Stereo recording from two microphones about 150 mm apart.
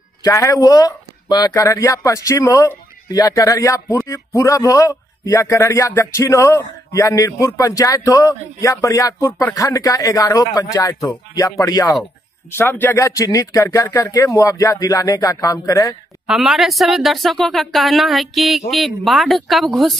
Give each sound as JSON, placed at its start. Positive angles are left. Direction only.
{"t": 0.2, "sound": "speech", "side_deg": 20}
{"t": 16.3, "sound": "speech", "side_deg": 0}